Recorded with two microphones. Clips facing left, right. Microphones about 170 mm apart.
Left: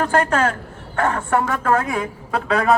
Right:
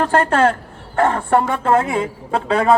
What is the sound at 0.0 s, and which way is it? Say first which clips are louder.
A man's voice: right 3 dB; 30° right (ahead or behind).